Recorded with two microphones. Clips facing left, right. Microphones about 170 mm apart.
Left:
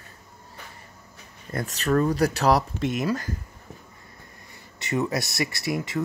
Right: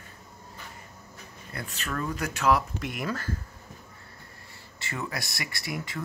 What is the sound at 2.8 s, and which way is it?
Speech, 20° left (ahead or behind).